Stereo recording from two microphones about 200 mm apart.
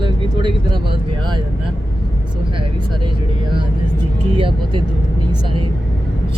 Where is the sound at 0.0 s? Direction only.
25° right (ahead or behind).